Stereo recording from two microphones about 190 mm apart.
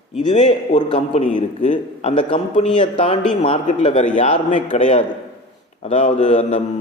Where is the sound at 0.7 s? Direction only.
40° left (ahead or behind).